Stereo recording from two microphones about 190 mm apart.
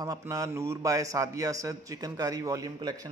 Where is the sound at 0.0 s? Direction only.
20° right (ahead or behind).